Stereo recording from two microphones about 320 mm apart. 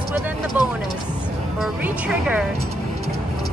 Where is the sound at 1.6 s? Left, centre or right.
Centre.